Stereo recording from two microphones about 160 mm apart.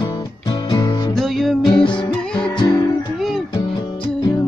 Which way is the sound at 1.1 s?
Centre (ahead or behind).